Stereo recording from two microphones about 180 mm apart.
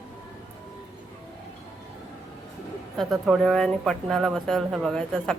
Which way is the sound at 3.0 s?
Centre (ahead or behind).